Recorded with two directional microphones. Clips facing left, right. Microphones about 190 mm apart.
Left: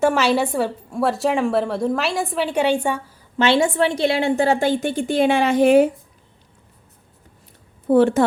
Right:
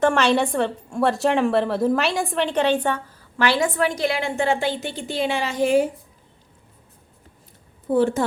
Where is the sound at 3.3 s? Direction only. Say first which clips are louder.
Left 4 dB; 25° left (ahead or behind); by 5.9 s 60° left (ahead or behind).